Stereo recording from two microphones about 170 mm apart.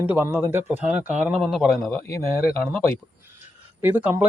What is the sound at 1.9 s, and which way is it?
Speech, 15° left (ahead or behind).